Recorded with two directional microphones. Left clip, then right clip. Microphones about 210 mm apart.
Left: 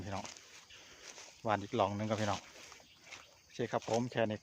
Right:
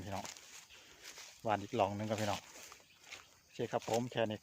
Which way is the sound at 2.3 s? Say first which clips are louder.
Left 1 dB; 40° right (ahead or behind).